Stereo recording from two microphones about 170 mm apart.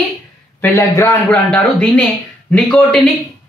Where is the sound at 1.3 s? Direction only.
5° left (ahead or behind).